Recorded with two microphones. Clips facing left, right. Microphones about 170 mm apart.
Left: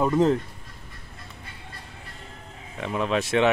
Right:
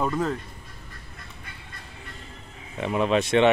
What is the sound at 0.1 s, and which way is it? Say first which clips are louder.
Speech: left 6 dB; 25° left (ahead or behind).